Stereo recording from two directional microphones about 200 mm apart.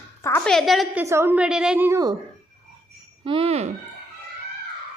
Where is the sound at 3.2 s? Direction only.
25° right (ahead or behind).